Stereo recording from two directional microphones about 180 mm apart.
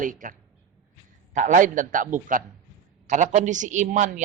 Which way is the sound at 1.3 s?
45° right (ahead or behind).